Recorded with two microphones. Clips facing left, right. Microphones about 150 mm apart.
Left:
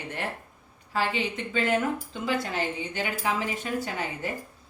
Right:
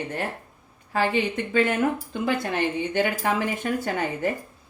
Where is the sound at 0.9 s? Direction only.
50° right (ahead or behind).